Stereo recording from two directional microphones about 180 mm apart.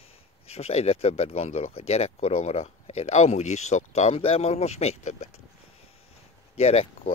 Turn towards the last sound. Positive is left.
turn(degrees=35)  # may be behind; listen again after turning